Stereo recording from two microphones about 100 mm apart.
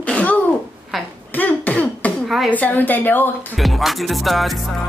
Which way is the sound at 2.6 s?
15° left (ahead or behind).